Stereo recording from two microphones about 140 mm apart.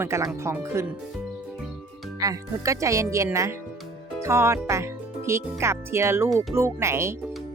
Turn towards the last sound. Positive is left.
turn(degrees=-20)  # may be behind; listen again after turning